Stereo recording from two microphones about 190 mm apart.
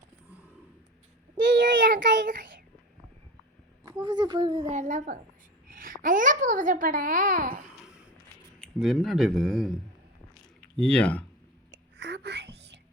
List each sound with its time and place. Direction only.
1.7 s child singing: 45° right (ahead or behind)
3.8 s a child's voice: 20° right (ahead or behind); by 7.6 s 45° right (ahead or behind)
8.5 s speech: 5° left (ahead or behind)
10.8 s speech: 5° left (ahead or behind)
11.7 s whispering: 70° right (ahead or behind)